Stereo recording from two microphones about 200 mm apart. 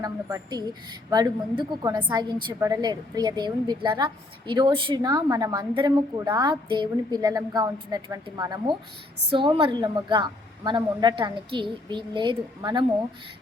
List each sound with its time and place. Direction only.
0.0 s a woman's voice: 15° right (ahead or behind)